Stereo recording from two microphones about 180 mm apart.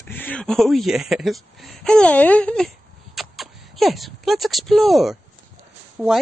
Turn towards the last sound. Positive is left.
turn(degrees=0)  # may be behind; listen again after turning